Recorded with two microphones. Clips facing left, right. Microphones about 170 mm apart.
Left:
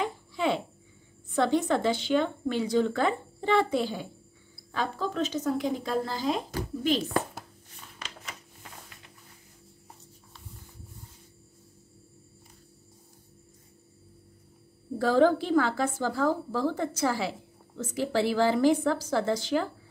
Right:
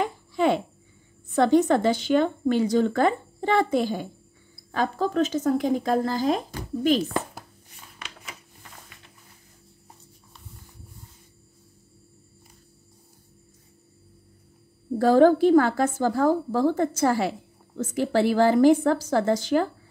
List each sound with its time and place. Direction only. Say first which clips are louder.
0.0 s babbling: right 5 dB; 45° right (ahead or behind)
1.3 s speech: right 6 dB; 45° right (ahead or behind)
15.0 s speech: right 6 dB; 50° right (ahead or behind)